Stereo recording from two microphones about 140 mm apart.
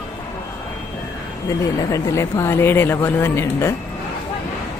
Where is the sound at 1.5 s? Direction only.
25° left (ahead or behind).